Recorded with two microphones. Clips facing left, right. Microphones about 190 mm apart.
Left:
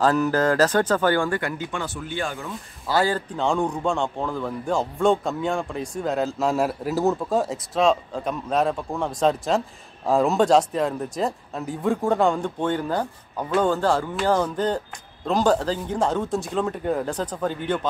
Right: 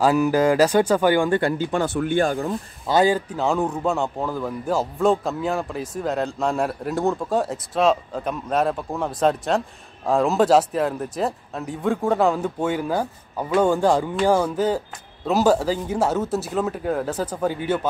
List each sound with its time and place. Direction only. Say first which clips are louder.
0.0 s speech: right 2 dB; 10° right (ahead or behind)
1.4 s speech: right 7 dB; 30° right (ahead or behind)
2.0 s speech: right 9 dB; 55° right (ahead or behind)
2.2 s speech: right 8 dB; 40° right (ahead or behind)
2.9 s a man's voice: right 4 dB; 15° right (ahead or behind)